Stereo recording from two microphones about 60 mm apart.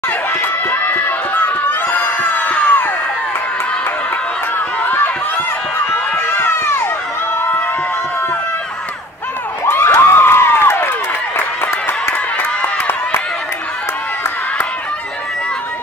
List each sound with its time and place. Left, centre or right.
0.4 s crowd: left
4.8 s a sound: left
6.1 s run: left
9.9 s crowd: left
11.3 s run: left